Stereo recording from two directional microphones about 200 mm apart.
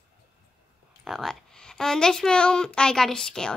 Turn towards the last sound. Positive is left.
turn(degrees=5)  # may be behind; listen again after turning